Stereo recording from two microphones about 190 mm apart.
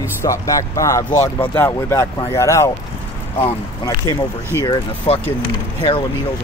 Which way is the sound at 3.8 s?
20° left (ahead or behind).